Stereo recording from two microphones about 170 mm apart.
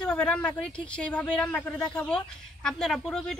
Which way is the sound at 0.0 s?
5° left (ahead or behind).